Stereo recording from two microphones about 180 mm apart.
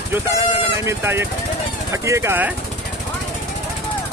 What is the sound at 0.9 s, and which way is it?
Speech, 15° right (ahead or behind).